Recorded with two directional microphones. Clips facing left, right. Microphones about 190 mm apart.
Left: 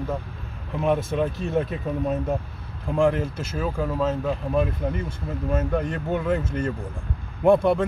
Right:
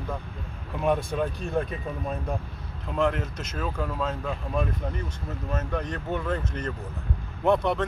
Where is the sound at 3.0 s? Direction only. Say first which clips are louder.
Left 5 dB; 10° left (ahead or behind).